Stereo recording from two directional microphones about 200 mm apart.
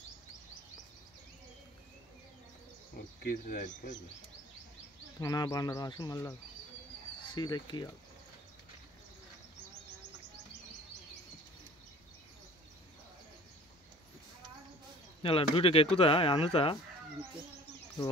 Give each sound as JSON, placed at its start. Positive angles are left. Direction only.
{"t": 3.3, "sound": "speech", "side_deg": 40}
{"t": 5.2, "sound": "speech", "side_deg": 20}
{"t": 15.2, "sound": "speech", "side_deg": 30}